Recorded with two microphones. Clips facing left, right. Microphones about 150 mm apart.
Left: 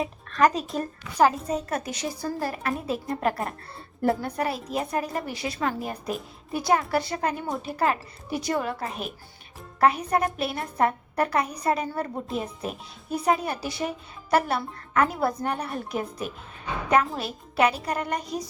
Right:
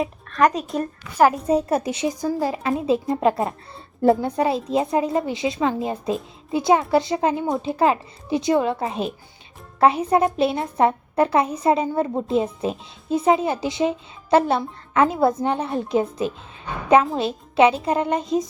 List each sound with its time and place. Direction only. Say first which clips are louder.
0.0 s a child's voice: right 3 dB; centre (ahead or behind)
1.5 s speech: right 8 dB; 30° right (ahead or behind)
2.0 s speech: right 6 dB; 15° right (ahead or behind)